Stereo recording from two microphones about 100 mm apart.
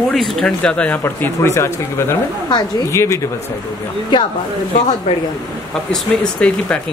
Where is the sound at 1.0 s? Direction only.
25° left (ahead or behind).